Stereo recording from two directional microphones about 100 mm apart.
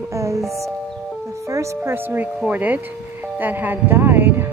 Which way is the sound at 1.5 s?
25° right (ahead or behind).